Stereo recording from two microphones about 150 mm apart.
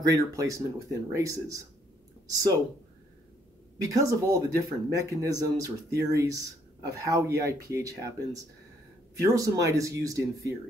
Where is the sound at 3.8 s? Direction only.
20° right (ahead or behind).